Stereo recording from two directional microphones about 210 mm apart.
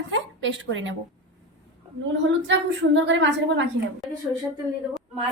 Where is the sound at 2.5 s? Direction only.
60° right (ahead or behind).